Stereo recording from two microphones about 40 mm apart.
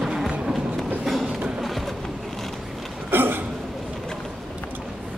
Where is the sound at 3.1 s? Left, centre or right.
Right.